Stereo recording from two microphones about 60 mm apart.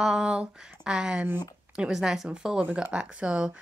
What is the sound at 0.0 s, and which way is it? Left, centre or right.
Speech, centre.